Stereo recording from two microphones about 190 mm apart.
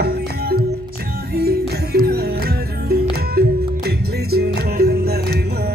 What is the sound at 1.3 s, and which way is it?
Music, 55° right (ahead or behind).